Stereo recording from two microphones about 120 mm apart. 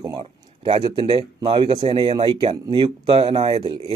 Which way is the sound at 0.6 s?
50° right (ahead or behind).